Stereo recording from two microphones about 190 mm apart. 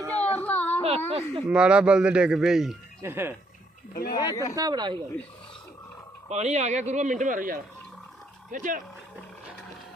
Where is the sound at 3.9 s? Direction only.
50° left (ahead or behind).